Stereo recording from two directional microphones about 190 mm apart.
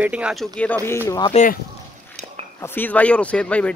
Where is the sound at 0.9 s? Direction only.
15° left (ahead or behind).